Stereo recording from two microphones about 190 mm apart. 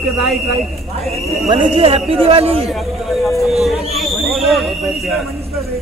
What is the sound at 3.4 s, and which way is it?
A man's voice, centre (ahead or behind).